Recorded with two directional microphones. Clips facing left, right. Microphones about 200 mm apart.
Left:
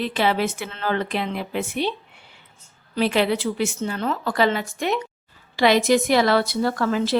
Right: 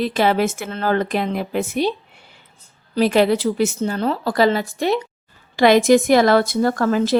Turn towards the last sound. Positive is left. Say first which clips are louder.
# right 4 dB
turn(degrees=-45)  # may be behind; listen again after turning